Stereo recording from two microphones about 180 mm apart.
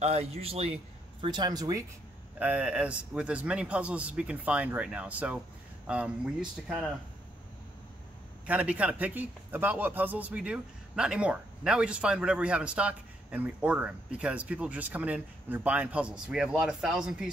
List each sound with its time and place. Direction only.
0.0 s a man's voice: 35° right (ahead or behind); by 1.9 s 20° right (ahead or behind)
2.3 s a man's voice: 10° right (ahead or behind)
8.5 s a man's voice: 10° right (ahead or behind)